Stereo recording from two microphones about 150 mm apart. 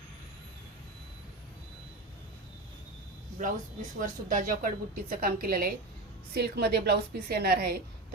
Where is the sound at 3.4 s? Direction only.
60° right (ahead or behind).